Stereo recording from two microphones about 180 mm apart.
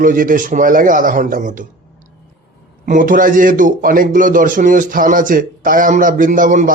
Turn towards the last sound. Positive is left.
turn(degrees=-45)  # may be behind; listen again after turning